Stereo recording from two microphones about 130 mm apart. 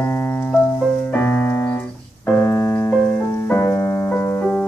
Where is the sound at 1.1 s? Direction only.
15° left (ahead or behind).